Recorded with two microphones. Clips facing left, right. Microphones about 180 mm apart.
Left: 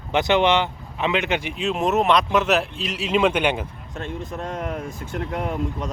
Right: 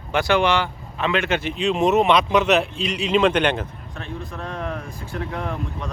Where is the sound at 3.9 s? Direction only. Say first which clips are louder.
Left 4 dB; 20° left (ahead or behind).